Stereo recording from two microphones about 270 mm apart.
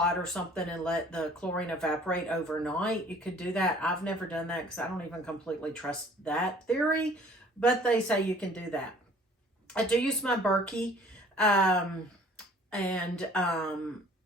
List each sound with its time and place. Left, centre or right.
0.0 s speech: centre